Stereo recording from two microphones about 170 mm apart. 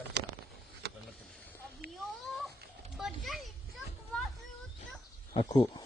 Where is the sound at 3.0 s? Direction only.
Centre (ahead or behind).